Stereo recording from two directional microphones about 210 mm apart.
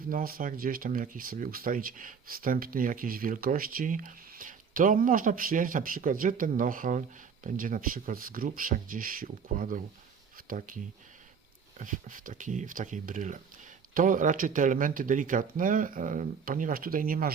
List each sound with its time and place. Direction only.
0.1 s speech: 40° right (ahead or behind)
11.8 s speech: 40° right (ahead or behind)